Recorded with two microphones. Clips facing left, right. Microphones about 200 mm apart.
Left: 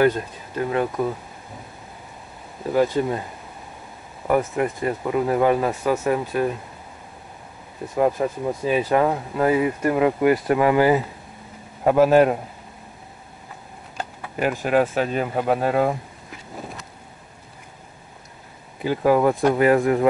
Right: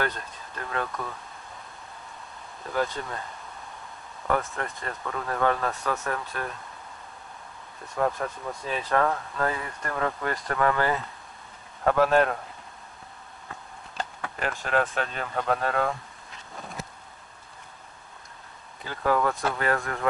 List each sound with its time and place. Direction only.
0.0 s speech: 15° left (ahead or behind)
2.6 s speech: 20° left (ahead or behind)
4.3 s speech: 15° left (ahead or behind)
7.8 s speech: 20° left (ahead or behind)
13.9 s speech: 15° left (ahead or behind)
18.9 s speech: 15° left (ahead or behind)